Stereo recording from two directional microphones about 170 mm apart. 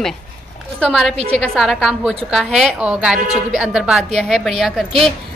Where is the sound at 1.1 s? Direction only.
40° right (ahead or behind).